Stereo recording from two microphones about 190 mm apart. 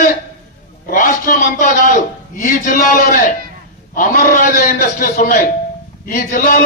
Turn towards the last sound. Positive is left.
turn(degrees=50)  # may be behind; listen again after turning